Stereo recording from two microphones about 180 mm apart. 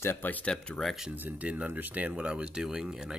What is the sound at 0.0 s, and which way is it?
Speech, 10° left (ahead or behind).